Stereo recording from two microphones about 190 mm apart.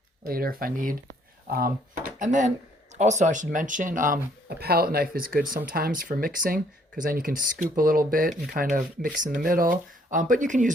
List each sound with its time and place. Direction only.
0.3 s speech: 50° right (ahead or behind)